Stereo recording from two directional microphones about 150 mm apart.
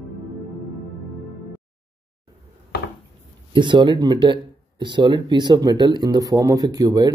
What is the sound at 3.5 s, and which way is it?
Speech, 30° right (ahead or behind).